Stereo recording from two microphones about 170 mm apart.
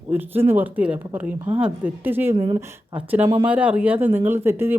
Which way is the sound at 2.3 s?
30° right (ahead or behind).